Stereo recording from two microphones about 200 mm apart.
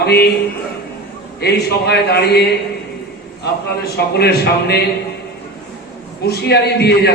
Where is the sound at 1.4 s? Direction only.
55° left (ahead or behind).